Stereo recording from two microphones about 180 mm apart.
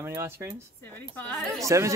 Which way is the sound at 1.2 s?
10° left (ahead or behind).